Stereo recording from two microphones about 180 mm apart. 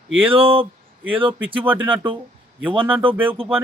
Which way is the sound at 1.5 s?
10° right (ahead or behind).